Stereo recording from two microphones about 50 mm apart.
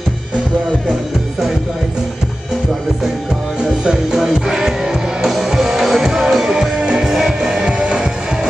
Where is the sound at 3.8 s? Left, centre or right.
Centre.